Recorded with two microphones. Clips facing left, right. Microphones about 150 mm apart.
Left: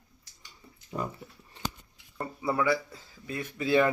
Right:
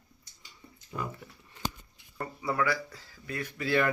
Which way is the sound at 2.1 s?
20° left (ahead or behind).